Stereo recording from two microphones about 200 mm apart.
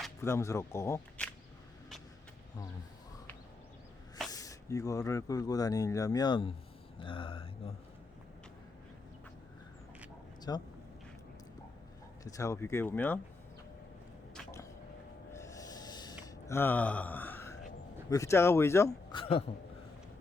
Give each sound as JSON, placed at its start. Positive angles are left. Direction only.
{"t": 0.2, "sound": "speech", "side_deg": 15}
{"t": 4.3, "sound": "speech", "side_deg": 15}
{"t": 7.0, "sound": "mantra", "side_deg": 25}
{"t": 10.5, "sound": "mantra", "side_deg": 20}
{"t": 12.2, "sound": "speech", "side_deg": 15}
{"t": 15.3, "sound": "a sound", "side_deg": 15}
{"t": 18.1, "sound": "speech", "side_deg": 15}
{"t": 19.1, "sound": "a sound", "side_deg": 30}